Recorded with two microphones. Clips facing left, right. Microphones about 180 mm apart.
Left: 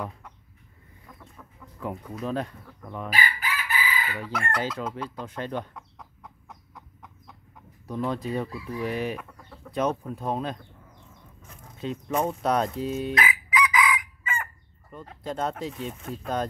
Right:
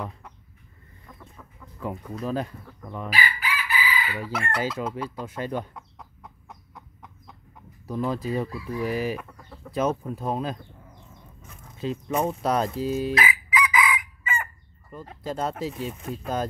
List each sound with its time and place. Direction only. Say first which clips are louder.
1.8 s chicken: right 1 dB; centre (ahead or behind)
3.1 s chicken: right 1 dB; 45° left (ahead or behind)
4.2 s chicken: even; 5° right (ahead or behind)
11.8 s fowl: right 1 dB; centre (ahead or behind)
15.8 s chicken: right 2 dB; 5° right (ahead or behind)